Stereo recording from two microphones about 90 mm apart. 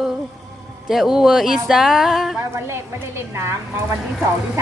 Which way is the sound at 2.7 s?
30° right (ahead or behind).